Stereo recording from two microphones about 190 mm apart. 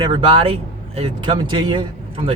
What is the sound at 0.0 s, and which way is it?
Speech, 25° right (ahead or behind).